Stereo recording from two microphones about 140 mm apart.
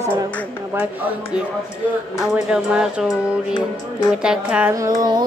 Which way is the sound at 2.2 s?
5° right (ahead or behind).